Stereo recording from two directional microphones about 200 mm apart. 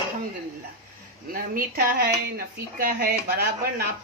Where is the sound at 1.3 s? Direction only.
50° right (ahead or behind).